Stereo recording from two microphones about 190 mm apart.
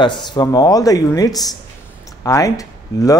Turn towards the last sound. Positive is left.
turn(degrees=15)  # may be behind; listen again after turning